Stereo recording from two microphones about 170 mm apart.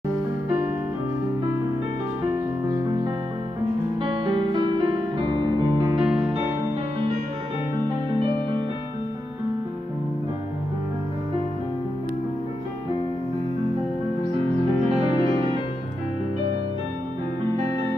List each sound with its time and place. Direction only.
2.7 s music: 25° right (ahead or behind)
4.0 s music: 30° right (ahead or behind)